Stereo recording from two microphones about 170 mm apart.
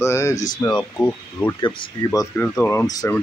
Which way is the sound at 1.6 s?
30° left (ahead or behind).